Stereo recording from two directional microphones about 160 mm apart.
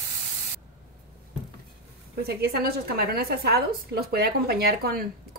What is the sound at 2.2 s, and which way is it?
A woman's voice, 80° right.